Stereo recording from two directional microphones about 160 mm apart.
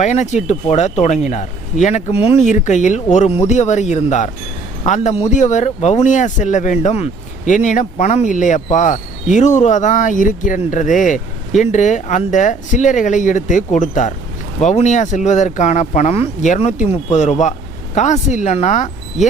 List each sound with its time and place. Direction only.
0.0 s speech: 45° left (ahead or behind)